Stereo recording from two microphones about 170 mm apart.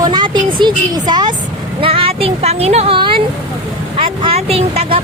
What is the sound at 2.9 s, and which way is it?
Speech, 30° right (ahead or behind).